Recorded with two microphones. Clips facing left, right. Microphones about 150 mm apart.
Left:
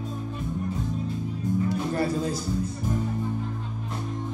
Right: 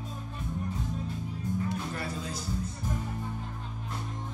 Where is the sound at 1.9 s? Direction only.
35° left (ahead or behind).